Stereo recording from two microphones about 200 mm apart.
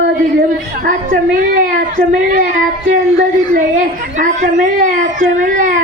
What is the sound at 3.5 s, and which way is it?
A woman's voice, 40° right (ahead or behind).